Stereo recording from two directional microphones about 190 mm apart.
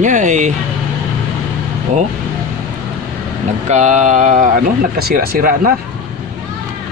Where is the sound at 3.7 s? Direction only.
40° right (ahead or behind).